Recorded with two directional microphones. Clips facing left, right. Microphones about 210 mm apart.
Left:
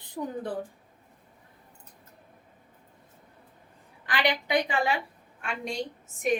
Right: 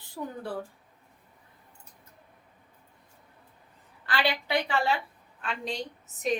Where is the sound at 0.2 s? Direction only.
20° left (ahead or behind).